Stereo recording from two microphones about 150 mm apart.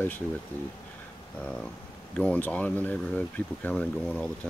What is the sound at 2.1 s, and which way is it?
Speech, 10° left (ahead or behind).